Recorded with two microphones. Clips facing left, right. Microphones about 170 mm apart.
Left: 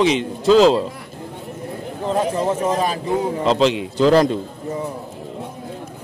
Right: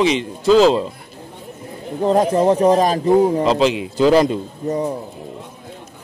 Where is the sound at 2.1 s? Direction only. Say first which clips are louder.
Right 5 dB; 35° right (ahead or behind).